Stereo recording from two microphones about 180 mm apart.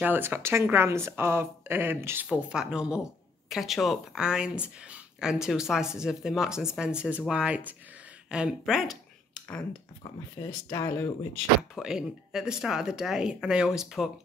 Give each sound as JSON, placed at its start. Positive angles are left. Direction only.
{"t": 0.0, "sound": "speech", "side_deg": -10}
{"t": 10.4, "sound": "speech", "side_deg": 15}
{"t": 11.7, "sound": "speech", "side_deg": -5}